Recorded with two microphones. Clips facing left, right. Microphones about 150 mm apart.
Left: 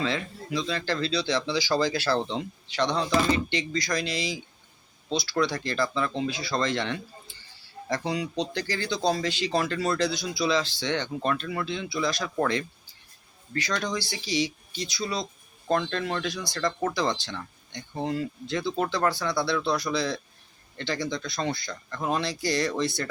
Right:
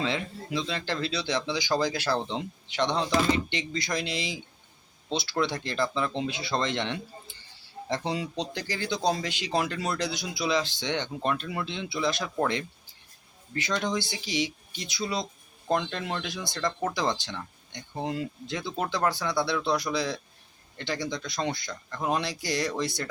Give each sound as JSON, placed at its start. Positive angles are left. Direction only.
{"t": 0.0, "sound": "speech", "side_deg": -20}